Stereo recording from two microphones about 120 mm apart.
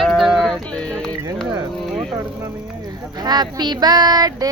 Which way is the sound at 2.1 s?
30° right (ahead or behind).